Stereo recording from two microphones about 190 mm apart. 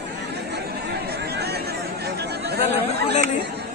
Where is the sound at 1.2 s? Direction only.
60° right (ahead or behind).